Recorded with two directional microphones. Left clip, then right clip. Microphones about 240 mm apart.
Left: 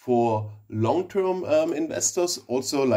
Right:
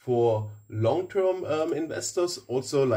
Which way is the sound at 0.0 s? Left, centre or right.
Left.